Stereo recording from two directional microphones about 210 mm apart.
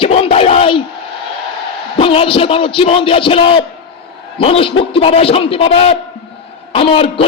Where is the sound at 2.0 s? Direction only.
25° left (ahead or behind).